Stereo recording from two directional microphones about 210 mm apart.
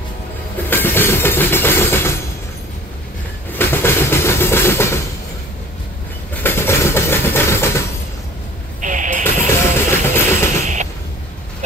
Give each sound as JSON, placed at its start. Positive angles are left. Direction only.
{"t": 0.7, "sound": "music", "side_deg": 10}
{"t": 3.5, "sound": "vehicle", "side_deg": 10}
{"t": 6.3, "sound": "a sound", "side_deg": 10}
{"t": 8.8, "sound": "music", "side_deg": -35}
{"t": 9.6, "sound": "music", "side_deg": 10}
{"t": 10.6, "sound": "a sound", "side_deg": -35}